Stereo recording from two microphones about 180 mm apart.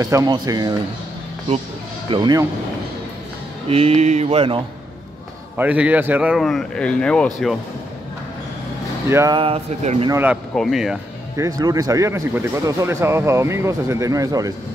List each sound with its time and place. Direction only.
0.0 s speech: 20° right (ahead or behind)
2.0 s speech: 25° right (ahead or behind)
3.6 s speech: 35° right (ahead or behind)
5.6 s a man's voice: 10° right (ahead or behind)
9.1 s speech: 15° right (ahead or behind)
9.4 s speech: 35° right (ahead or behind)
10.0 s speech: 10° right (ahead or behind)
10.5 s a man's voice: centre (ahead or behind)
11.3 s speech: 20° right (ahead or behind)